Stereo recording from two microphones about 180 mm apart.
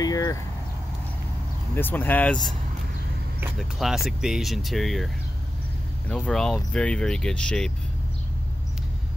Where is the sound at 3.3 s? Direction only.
Centre (ahead or behind).